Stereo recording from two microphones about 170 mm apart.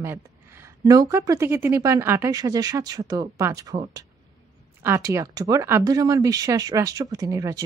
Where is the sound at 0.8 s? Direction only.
20° right (ahead or behind).